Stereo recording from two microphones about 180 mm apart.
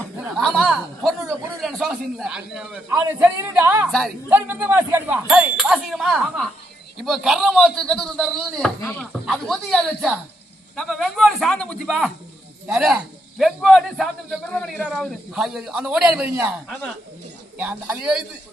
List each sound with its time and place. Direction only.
0.2 s a man's voice: centre (ahead or behind)
17.6 s speech: 10° right (ahead or behind)